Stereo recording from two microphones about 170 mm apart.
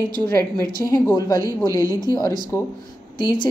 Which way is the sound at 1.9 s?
20° left (ahead or behind).